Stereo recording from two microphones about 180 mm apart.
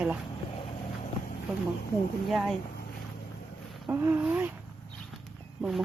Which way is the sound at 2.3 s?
Centre (ahead or behind).